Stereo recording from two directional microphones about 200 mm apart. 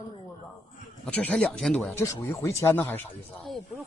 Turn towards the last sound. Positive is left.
turn(degrees=0)  # may be behind; listen again after turning